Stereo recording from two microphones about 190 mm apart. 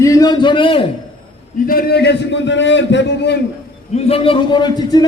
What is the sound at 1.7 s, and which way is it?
A man's voice, 55° left (ahead or behind).